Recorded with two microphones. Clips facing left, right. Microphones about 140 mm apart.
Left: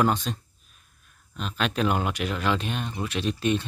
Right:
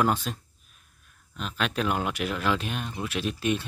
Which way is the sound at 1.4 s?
Centre (ahead or behind).